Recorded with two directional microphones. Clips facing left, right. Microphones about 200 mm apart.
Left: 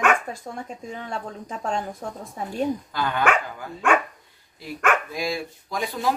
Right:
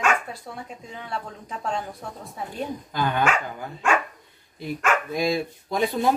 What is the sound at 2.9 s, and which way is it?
Speech, 15° right (ahead or behind).